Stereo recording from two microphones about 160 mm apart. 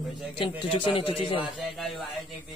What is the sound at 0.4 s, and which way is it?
A man's voice, 30° left (ahead or behind).